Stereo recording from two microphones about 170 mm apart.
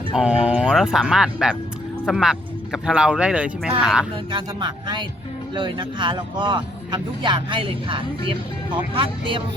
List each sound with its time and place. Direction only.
0.1 s speech: 5° right (ahead or behind)
4.3 s speech: 30° right (ahead or behind)